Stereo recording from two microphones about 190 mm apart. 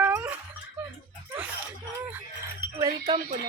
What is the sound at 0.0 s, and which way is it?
Wail, 10° right (ahead or behind).